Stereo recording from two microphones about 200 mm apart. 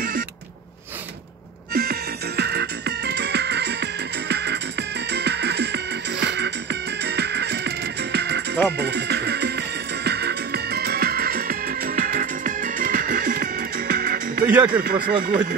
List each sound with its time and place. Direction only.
1.7 s music: 50° right (ahead or behind)
14.4 s a sound: 10° right (ahead or behind)
14.8 s speech: 45° right (ahead or behind)